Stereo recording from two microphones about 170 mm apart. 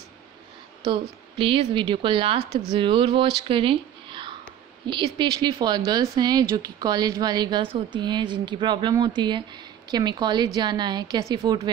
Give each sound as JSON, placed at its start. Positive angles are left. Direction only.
{"t": 1.4, "sound": "a woman's voice", "side_deg": -30}